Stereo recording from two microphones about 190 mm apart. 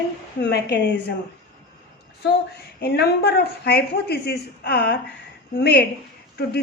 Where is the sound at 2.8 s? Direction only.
55° left (ahead or behind).